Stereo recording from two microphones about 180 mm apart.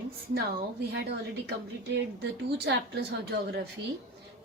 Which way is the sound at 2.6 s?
65° right (ahead or behind).